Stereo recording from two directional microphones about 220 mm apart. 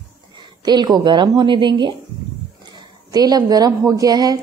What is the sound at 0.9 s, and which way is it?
A woman's voice, 20° right (ahead or behind).